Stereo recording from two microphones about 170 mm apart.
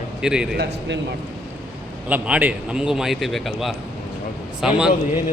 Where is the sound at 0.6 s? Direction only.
90° right.